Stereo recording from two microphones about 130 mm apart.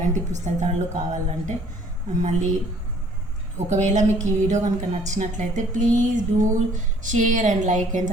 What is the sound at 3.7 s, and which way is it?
A woman's voice, 65° right (ahead or behind).